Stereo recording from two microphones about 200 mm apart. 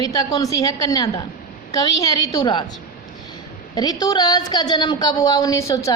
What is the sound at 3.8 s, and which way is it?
A woman's voice, 20° left (ahead or behind).